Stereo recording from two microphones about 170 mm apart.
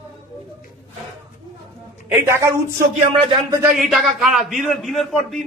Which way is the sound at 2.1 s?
15° right (ahead or behind).